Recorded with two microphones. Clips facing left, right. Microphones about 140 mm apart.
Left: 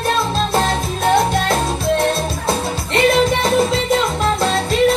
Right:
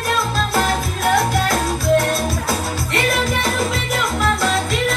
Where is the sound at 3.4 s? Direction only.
30° left (ahead or behind).